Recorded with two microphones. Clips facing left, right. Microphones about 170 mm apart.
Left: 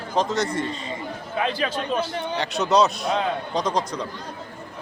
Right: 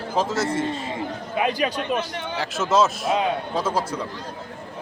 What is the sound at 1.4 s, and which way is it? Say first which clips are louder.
Speech: right 2 dB; 15° right (ahead or behind).